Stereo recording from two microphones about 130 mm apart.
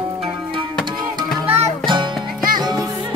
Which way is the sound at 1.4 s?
50° right (ahead or behind).